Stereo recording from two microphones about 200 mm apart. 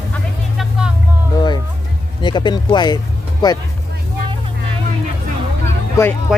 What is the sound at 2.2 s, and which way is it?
Speech, 20° left (ahead or behind).